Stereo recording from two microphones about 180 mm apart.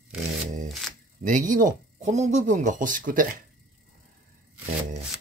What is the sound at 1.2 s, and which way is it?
Speech, 45° right (ahead or behind).